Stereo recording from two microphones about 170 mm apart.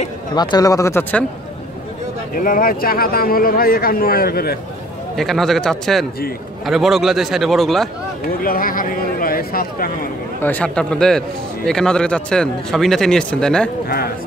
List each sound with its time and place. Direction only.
0.3 s speech: 25° left (ahead or behind)
2.3 s speech: 55° left (ahead or behind)
5.1 s a man's voice: centre (ahead or behind)
8.3 s speech: 55° left (ahead or behind)
10.4 s a man's voice: 10° left (ahead or behind)
13.8 s speech: 65° left (ahead or behind)